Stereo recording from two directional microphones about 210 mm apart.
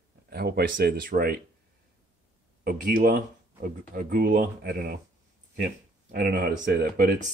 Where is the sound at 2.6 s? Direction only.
40° right (ahead or behind).